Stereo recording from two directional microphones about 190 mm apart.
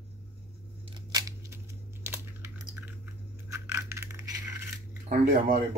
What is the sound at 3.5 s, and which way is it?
Coin, 15° right (ahead or behind).